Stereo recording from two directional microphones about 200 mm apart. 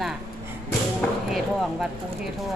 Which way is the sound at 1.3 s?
Centre (ahead or behind).